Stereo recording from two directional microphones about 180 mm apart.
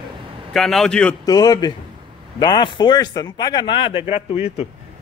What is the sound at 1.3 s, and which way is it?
A man's voice, 20° left (ahead or behind).